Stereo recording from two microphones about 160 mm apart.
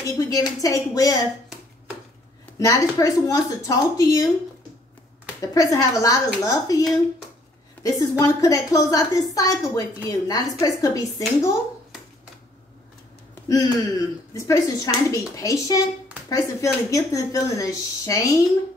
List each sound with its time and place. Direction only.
0.0 s speech: 20° left (ahead or behind)
2.6 s speech: 20° left (ahead or behind)
5.5 s speech: 20° left (ahead or behind)
7.8 s speech: 20° left (ahead or behind)
13.3 s speech: 20° left (ahead or behind)